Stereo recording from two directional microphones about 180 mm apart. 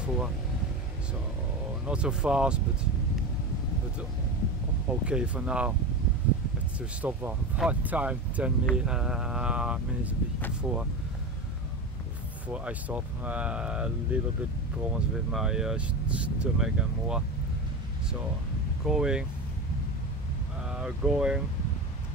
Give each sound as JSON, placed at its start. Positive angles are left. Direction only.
{"t": 1.9, "sound": "speech", "side_deg": -5}
{"t": 4.8, "sound": "speech", "side_deg": -5}
{"t": 7.0, "sound": "speech", "side_deg": -10}
{"t": 12.4, "sound": "speech", "side_deg": -5}
{"t": 18.9, "sound": "speech", "side_deg": -5}
{"t": 20.6, "sound": "speech", "side_deg": -5}